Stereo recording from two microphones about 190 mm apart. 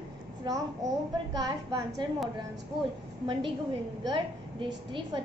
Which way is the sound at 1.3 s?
20° right (ahead or behind).